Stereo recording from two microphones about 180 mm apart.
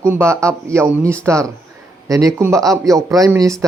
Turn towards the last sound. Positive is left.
turn(degrees=-15)  # may be behind; listen again after turning